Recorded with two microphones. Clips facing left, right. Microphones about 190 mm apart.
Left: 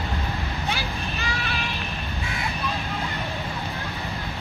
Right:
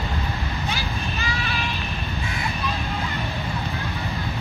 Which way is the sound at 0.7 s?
60° left (ahead or behind).